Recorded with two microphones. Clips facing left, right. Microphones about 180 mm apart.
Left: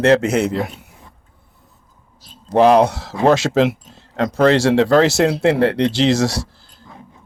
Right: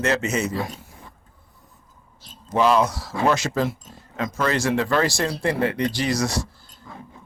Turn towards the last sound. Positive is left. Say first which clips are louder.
# left 7 dB
turn(degrees=75)  # may be behind; listen again after turning